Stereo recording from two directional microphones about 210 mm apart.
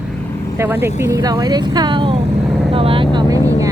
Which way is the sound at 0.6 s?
10° right (ahead or behind).